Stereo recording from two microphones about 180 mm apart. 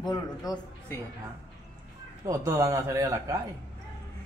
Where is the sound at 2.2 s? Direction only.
20° right (ahead or behind).